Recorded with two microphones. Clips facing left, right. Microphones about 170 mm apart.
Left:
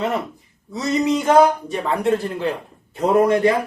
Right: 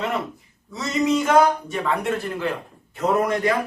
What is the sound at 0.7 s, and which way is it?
A man's voice, 30° left (ahead or behind).